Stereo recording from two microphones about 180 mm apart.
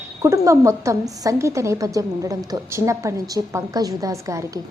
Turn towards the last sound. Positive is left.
turn(degrees=-15)  # may be behind; listen again after turning